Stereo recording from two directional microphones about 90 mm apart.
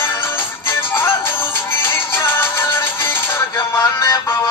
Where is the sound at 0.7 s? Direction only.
25° left (ahead or behind).